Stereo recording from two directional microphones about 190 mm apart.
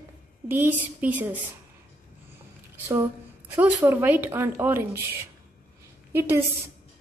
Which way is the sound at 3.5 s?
10° right (ahead or behind).